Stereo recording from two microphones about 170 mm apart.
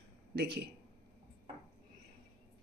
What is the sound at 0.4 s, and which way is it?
Speech, 70° right (ahead or behind).